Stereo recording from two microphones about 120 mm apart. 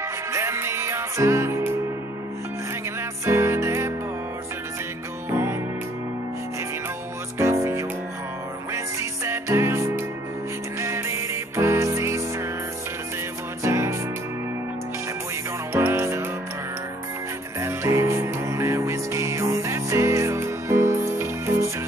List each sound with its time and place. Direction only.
0.3 s music: 25° right (ahead or behind)
3.3 s music: 20° right (ahead or behind)
5.3 s music: 20° right (ahead or behind)
7.3 s music: 25° right (ahead or behind)
13.6 s music: 25° right (ahead or behind)
15.7 s music: 20° right (ahead or behind)
17.6 s music: 20° right (ahead or behind)